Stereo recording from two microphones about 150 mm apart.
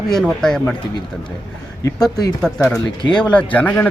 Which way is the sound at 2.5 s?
5° left (ahead or behind).